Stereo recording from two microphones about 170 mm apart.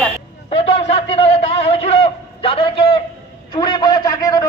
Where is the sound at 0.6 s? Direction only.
40° left (ahead or behind).